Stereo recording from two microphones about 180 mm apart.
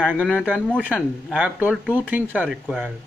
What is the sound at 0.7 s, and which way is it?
Speech, 5° right (ahead or behind).